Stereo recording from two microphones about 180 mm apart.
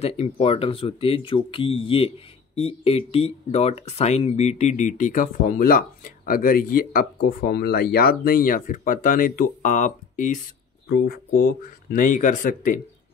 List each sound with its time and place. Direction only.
0.0 s speech: 35° left (ahead or behind)
10.9 s speech: 55° left (ahead or behind)